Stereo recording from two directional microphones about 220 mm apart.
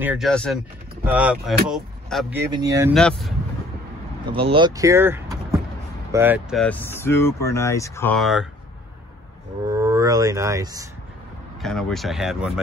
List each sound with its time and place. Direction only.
0.0 s speech: 5° right (ahead or behind)
2.5 s speech: 15° right (ahead or behind)
2.9 s speech: centre (ahead or behind)
4.3 s speech: 25° right (ahead or behind); by 6.6 s 10° right (ahead or behind)
6.6 s speech: 10° left (ahead or behind)
9.7 s speech: 15° right (ahead or behind)
11.6 s speech: centre (ahead or behind)